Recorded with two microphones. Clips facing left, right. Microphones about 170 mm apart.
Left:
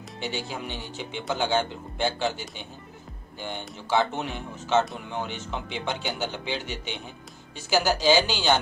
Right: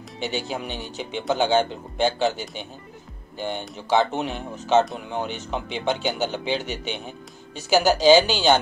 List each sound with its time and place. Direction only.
0.2 s speech: 20° right (ahead or behind)